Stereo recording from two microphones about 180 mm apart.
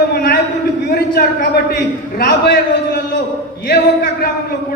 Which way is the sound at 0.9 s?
60° left (ahead or behind).